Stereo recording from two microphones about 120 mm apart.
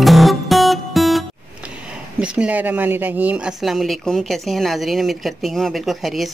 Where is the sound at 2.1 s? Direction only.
10° right (ahead or behind).